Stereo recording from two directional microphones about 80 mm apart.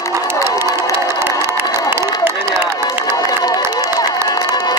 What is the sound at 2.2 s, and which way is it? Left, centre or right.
Run, right.